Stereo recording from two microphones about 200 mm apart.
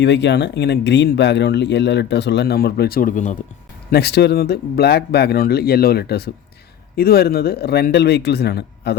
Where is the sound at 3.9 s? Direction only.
55° left (ahead or behind).